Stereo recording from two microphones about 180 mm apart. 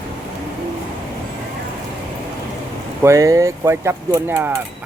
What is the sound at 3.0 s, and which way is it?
Speech, 15° right (ahead or behind).